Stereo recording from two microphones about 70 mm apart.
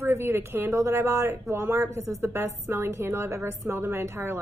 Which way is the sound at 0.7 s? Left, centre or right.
Right.